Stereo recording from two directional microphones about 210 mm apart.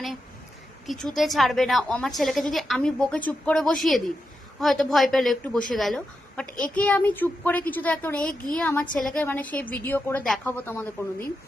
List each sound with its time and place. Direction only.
0.9 s a woman's voice: centre (ahead or behind)